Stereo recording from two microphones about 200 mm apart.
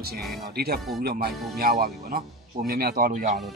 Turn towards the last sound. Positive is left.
turn(degrees=-40)  # may be behind; listen again after turning